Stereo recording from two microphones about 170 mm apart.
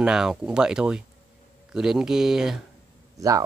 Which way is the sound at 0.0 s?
5° right (ahead or behind).